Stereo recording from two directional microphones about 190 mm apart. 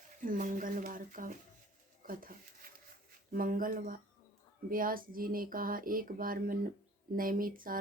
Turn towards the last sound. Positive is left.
turn(degrees=-45)  # may be behind; listen again after turning